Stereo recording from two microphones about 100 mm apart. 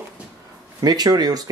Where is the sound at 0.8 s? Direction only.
40° right (ahead or behind).